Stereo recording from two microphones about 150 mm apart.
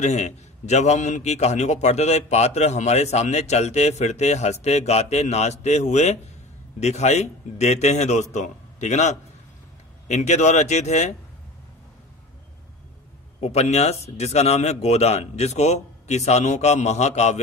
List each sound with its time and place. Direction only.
0.0 s a man's voice: 50° left (ahead or behind)
13.4 s a man's voice: 45° left (ahead or behind)